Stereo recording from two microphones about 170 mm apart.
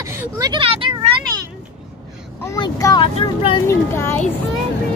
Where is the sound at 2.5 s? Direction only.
20° left (ahead or behind).